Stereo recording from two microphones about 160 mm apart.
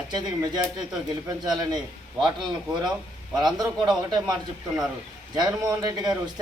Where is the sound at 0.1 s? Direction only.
25° right (ahead or behind).